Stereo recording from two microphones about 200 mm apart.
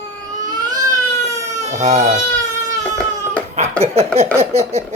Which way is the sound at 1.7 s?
35° right (ahead or behind).